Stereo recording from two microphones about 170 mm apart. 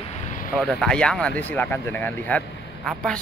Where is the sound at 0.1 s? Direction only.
50° left (ahead or behind).